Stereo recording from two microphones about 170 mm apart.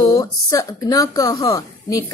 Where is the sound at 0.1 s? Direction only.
20° left (ahead or behind).